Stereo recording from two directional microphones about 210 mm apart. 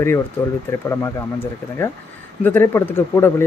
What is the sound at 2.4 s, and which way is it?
Speech, 10° left (ahead or behind).